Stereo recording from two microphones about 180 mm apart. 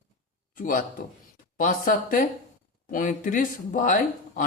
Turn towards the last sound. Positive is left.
turn(degrees=45)  # may be behind; listen again after turning